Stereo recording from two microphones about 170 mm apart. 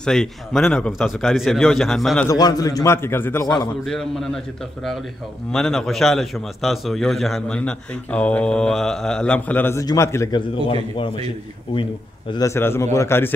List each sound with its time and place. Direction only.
0.0 s a man's voice: 5° left (ahead or behind)
2.2 s a man's voice: 20° left (ahead or behind)
3.8 s a man's voice: 5° left (ahead or behind)
5.5 s a man's voice: 5° left (ahead or behind)
12.3 s a man's voice: 20° left (ahead or behind)